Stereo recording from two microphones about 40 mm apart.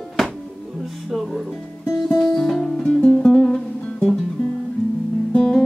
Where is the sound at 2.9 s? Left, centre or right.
Left.